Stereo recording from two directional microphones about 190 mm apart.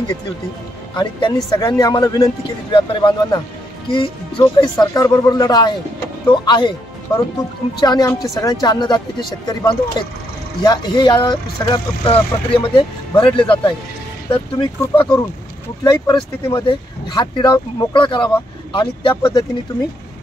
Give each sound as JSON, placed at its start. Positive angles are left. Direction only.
{"t": 0.9, "sound": "speech", "side_deg": 20}
{"t": 7.8, "sound": "speech", "side_deg": 20}